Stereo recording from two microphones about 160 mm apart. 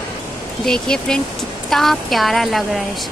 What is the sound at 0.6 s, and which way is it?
Speech, 5° left (ahead or behind).